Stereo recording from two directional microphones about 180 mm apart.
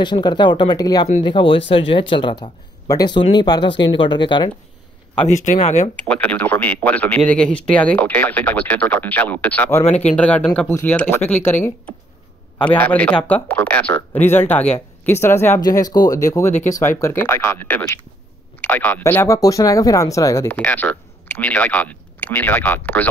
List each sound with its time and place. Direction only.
0.0 s speech: 25° left (ahead or behind)
5.2 s speech: 40° left (ahead or behind)
6.0 s speech: 10° left (ahead or behind)
9.8 s speech: 40° left (ahead or behind)
10.1 s speech: 5° left (ahead or behind)